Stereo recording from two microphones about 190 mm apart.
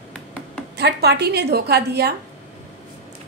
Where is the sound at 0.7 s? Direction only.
60° right (ahead or behind).